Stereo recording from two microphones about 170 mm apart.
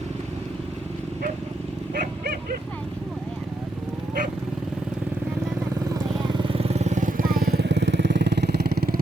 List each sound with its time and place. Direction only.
5.9 s vehicle: 30° right (ahead or behind); by 9.0 s 70° right (ahead or behind)